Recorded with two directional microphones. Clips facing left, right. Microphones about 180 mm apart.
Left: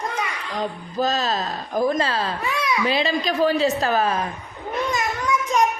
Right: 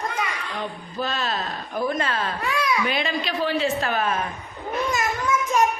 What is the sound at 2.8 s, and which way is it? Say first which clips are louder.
A woman's voice: left 4 dB; 35° left (ahead or behind).